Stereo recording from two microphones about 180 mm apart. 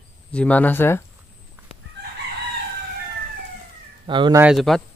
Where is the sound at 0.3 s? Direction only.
10° left (ahead or behind).